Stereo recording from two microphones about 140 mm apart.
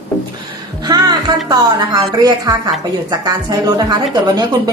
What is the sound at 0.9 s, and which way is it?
Music, 25° right (ahead or behind).